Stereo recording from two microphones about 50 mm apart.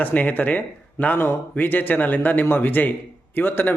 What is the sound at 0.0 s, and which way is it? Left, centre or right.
A man's voice, left.